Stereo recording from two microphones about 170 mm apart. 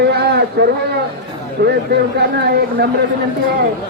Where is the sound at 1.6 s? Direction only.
65° right (ahead or behind).